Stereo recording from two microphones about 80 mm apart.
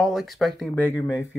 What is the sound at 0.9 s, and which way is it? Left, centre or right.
Speech, left.